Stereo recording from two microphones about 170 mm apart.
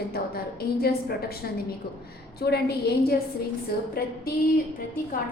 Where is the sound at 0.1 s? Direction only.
65° left (ahead or behind).